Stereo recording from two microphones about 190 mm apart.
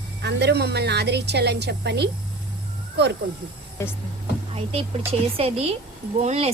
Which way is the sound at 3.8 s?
15° left (ahead or behind).